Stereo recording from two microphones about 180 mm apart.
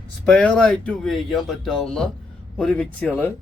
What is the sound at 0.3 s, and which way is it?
Speech, 5° left (ahead or behind).